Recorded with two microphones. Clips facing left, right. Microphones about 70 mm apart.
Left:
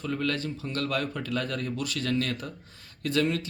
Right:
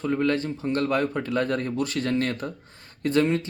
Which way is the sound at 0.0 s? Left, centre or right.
Right.